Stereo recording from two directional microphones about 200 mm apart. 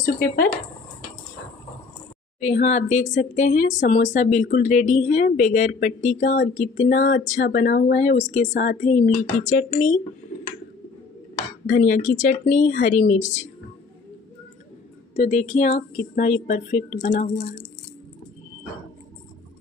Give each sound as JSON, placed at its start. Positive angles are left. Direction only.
{"t": 0.0, "sound": "speech", "side_deg": 45}
{"t": 2.4, "sound": "a woman's voice", "side_deg": 35}
{"t": 11.6, "sound": "a woman's voice", "side_deg": 45}
{"t": 15.1, "sound": "a woman's voice", "side_deg": 35}